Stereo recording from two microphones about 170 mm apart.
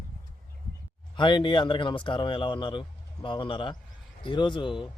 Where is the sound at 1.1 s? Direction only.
30° left (ahead or behind).